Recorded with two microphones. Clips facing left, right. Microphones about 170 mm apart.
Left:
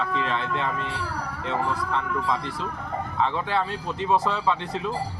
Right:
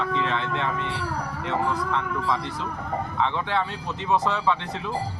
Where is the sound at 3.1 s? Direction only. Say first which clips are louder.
Left 1 dB; centre (ahead or behind).